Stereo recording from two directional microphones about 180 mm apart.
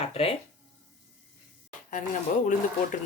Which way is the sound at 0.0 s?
35° left (ahead or behind).